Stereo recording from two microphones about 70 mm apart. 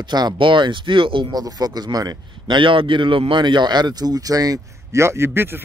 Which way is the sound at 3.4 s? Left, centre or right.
Right.